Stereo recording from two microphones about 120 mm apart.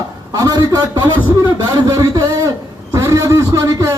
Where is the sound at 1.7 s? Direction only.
30° right (ahead or behind).